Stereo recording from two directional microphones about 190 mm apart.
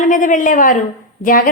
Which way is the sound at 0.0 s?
45° left (ahead or behind).